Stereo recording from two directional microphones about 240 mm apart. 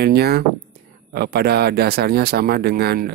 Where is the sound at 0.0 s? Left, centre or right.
Right.